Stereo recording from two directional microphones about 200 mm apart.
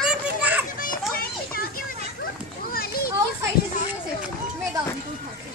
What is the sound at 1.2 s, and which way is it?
Children playing, 45° left (ahead or behind).